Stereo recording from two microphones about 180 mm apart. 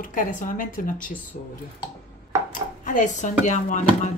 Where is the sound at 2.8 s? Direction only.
45° left (ahead or behind).